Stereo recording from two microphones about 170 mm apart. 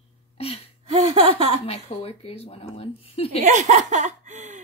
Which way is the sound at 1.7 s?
35° left (ahead or behind).